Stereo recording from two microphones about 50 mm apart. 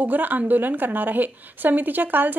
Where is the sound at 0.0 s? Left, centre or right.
Right.